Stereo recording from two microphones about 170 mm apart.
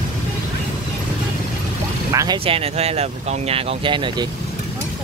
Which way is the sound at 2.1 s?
20° right (ahead or behind).